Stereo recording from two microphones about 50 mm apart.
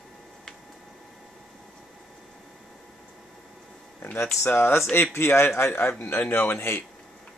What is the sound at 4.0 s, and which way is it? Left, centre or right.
A man's voice, left.